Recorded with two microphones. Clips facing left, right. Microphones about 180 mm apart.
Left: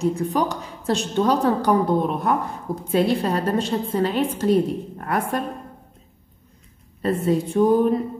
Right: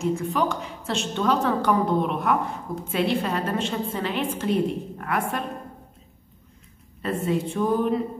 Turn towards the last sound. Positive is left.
turn(degrees=40)  # may be behind; listen again after turning